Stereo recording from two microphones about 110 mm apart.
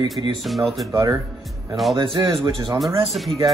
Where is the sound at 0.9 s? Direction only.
30° right (ahead or behind).